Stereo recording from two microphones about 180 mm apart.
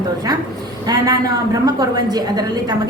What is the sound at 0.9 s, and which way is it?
A woman's voice, 20° right (ahead or behind).